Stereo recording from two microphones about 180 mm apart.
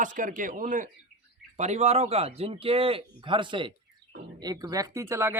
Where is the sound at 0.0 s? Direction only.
45° right (ahead or behind).